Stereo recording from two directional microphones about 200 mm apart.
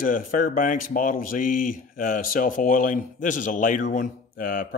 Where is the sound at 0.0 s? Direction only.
45° left (ahead or behind).